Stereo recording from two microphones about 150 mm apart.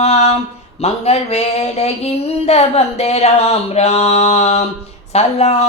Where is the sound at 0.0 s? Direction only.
45° left (ahead or behind).